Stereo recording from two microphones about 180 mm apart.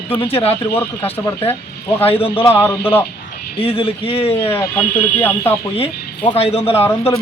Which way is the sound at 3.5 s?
30° left (ahead or behind).